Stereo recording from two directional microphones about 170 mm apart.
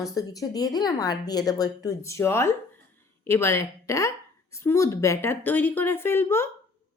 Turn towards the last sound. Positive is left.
turn(degrees=15)  # may be behind; listen again after turning